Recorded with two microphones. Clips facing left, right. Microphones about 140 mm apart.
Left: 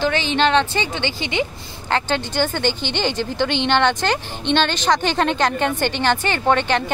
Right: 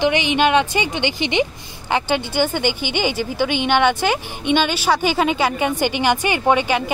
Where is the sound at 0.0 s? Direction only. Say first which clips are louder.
Right 2 dB; 15° right (ahead or behind).